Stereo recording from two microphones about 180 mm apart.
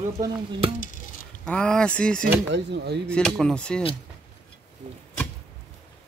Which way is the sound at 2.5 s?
70° right (ahead or behind).